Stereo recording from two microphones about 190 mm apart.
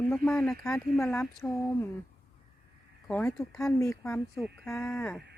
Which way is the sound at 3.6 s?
15° left (ahead or behind).